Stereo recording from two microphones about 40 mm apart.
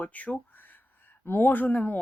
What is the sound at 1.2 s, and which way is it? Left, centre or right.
Speech, left.